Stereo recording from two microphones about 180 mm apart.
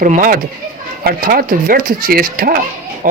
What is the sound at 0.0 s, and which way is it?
Speech, 45° right (ahead or behind).